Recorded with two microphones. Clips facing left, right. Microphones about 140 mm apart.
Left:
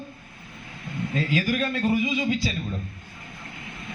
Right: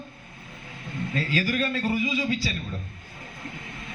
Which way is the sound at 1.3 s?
15° left (ahead or behind).